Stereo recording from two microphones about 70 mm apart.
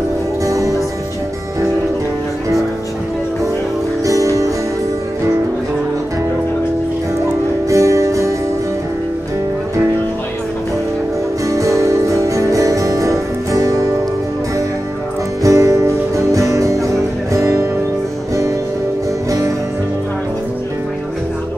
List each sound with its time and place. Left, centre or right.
4.0 s music: right
7.7 s music: right
11.4 s music: right
15.4 s music: right